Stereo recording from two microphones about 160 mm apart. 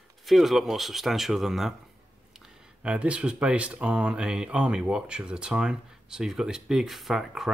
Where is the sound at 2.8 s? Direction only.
10° right (ahead or behind).